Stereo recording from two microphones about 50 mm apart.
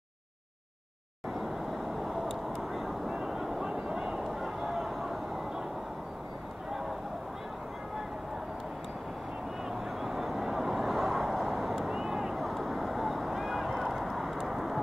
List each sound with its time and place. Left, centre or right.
1.4 s vehicle: centre
9.7 s vehicle: centre